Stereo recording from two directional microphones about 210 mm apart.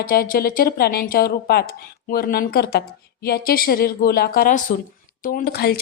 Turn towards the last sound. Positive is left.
turn(degrees=50)  # may be behind; listen again after turning